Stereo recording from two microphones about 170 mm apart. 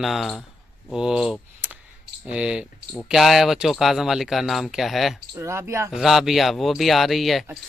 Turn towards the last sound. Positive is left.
turn(degrees=0)  # may be behind; listen again after turning